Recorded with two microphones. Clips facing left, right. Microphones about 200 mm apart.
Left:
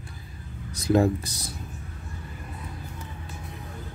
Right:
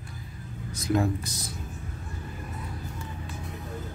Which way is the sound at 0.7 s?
30° left (ahead or behind).